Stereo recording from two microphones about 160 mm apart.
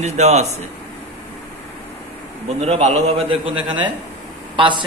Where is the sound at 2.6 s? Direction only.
40° right (ahead or behind).